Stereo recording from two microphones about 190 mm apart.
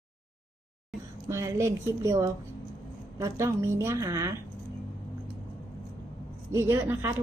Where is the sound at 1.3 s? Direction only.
15° right (ahead or behind).